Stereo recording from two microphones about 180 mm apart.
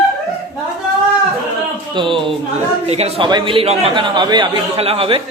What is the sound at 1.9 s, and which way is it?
A man's voice, 25° right (ahead or behind).